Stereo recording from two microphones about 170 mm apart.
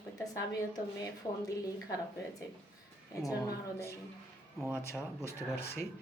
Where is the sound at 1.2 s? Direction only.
25° left (ahead or behind).